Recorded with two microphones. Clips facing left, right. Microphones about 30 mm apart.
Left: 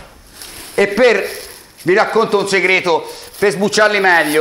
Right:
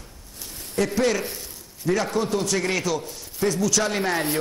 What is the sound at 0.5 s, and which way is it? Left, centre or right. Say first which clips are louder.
A man's voice: left 10 dB; left.